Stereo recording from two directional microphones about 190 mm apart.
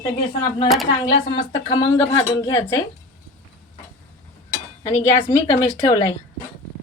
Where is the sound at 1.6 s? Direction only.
20° left (ahead or behind).